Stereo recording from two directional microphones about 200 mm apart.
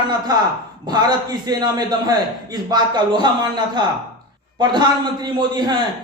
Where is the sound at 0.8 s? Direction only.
20° right (ahead or behind).